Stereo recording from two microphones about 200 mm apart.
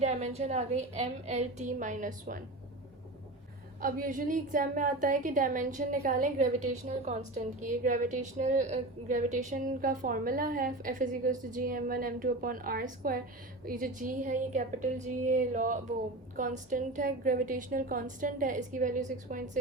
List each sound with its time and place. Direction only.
0.0 s a woman's voice: 35° right (ahead or behind)
3.8 s a woman's voice: 45° right (ahead or behind)